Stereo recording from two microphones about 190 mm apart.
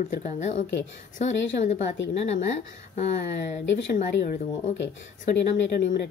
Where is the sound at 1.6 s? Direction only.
35° left (ahead or behind).